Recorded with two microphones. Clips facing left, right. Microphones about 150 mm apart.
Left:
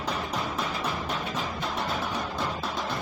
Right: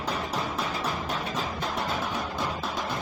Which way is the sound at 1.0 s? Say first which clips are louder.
Even; 40° right (ahead or behind).